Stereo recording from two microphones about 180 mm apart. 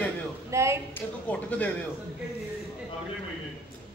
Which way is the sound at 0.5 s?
15° right (ahead or behind).